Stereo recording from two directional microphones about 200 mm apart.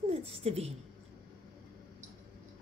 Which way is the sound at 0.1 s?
30° right (ahead or behind).